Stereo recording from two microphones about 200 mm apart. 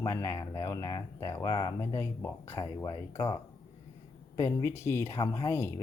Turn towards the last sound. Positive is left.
turn(degrees=15)  # may be behind; listen again after turning